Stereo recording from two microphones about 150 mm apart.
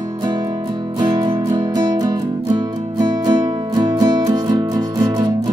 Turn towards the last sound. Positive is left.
turn(degrees=-25)  # may be behind; listen again after turning